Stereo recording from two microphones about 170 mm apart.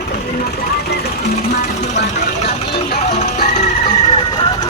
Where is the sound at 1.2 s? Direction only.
40° left (ahead or behind).